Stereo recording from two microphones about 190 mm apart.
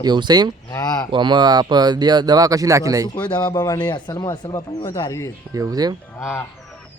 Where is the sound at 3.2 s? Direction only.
25° left (ahead or behind).